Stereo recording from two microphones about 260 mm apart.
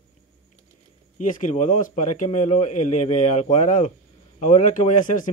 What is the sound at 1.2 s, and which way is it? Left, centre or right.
A man's voice, left.